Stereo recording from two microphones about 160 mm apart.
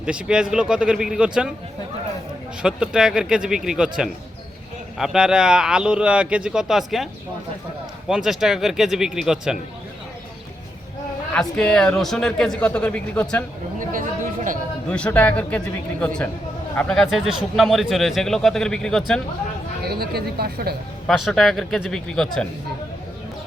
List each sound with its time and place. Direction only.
0.0 s a man's voice: 5° right (ahead or behind)
2.6 s a man's voice: 5° right (ahead or behind)
11.3 s a man's voice: 5° left (ahead or behind)
14.8 s a man's voice: 5° left (ahead or behind)
19.8 s speech: 75° right (ahead or behind)
21.1 s a man's voice: centre (ahead or behind)